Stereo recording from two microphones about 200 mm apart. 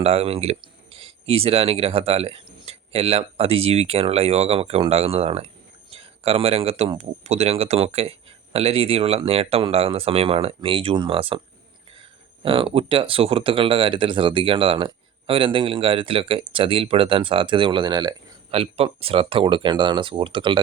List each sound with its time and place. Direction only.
0.0 s speech: 30° right (ahead or behind)
12.4 s speech: 25° right (ahead or behind)